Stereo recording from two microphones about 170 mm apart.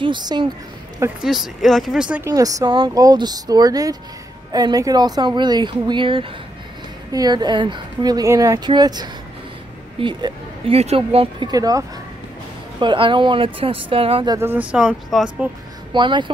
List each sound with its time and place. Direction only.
0.0 s a woman's voice: 25° right (ahead or behind)
1.2 s speech: centre (ahead or behind)
2.3 s a woman's voice: 20° right (ahead or behind)
14.4 s speech: 10° right (ahead or behind)
15.9 s a woman's voice: 25° right (ahead or behind)